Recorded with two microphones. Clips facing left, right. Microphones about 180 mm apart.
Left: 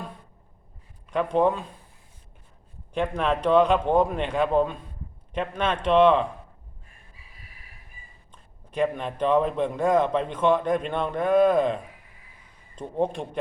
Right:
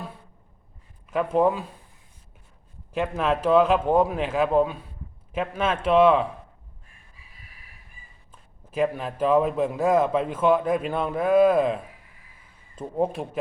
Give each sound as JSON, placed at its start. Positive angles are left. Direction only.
{"t": 1.1, "sound": "a man's voice", "side_deg": -5}
{"t": 2.9, "sound": "a man's voice", "side_deg": -5}
{"t": 8.3, "sound": "a man's voice", "side_deg": -5}